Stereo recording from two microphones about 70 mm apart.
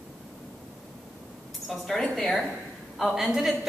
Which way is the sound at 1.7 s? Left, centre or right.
Centre.